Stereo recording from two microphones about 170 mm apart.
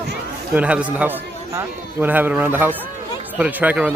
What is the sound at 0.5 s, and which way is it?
A man's voice, 5° right (ahead or behind).